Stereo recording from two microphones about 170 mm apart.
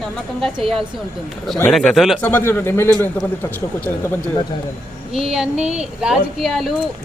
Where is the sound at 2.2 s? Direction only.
10° left (ahead or behind).